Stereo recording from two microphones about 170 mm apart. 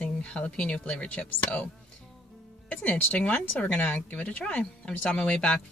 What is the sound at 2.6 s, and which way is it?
Speech, 10° left (ahead or behind).